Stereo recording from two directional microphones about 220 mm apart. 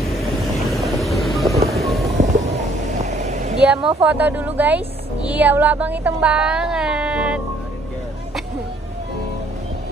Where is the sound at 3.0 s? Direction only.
30° right (ahead or behind).